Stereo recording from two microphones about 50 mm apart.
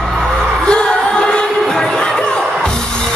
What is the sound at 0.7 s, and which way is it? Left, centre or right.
Music, centre.